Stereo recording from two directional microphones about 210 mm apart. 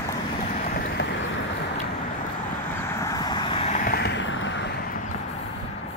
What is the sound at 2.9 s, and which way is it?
Vehicle, 15° left (ahead or behind).